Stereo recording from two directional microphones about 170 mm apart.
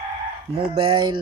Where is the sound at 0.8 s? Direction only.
30° right (ahead or behind).